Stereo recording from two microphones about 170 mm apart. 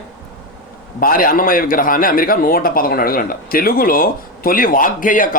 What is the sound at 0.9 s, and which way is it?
A man's voice, 55° left (ahead or behind).